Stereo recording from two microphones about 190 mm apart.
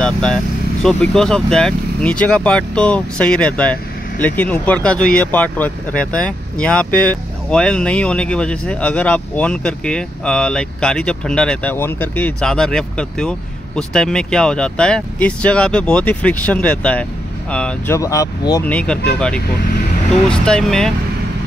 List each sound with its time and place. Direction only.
0.0 s vehicle: 5° left (ahead or behind)
0.8 s speech: 5° left (ahead or behind)
17.9 s speech: 15° left (ahead or behind)
18.7 s speech: 5° left (ahead or behind)